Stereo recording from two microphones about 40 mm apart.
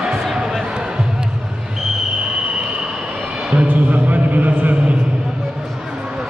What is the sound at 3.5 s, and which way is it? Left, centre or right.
Music, right.